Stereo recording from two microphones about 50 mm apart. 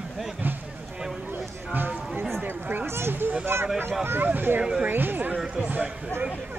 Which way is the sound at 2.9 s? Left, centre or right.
Right.